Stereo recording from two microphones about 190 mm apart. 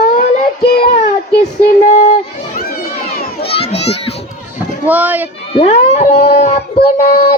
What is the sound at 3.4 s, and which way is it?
Children playing, 30° left (ahead or behind).